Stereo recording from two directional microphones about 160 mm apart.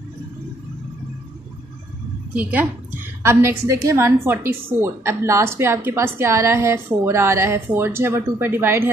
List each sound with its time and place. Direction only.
2.3 s a woman's voice: 10° right (ahead or behind)